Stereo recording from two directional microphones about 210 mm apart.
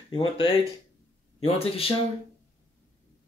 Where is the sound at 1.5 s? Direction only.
25° left (ahead or behind).